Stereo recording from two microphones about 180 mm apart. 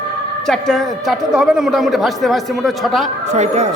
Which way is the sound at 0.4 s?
Centre (ahead or behind).